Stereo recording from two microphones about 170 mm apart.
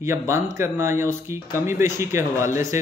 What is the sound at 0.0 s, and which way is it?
Speech, 15° right (ahead or behind).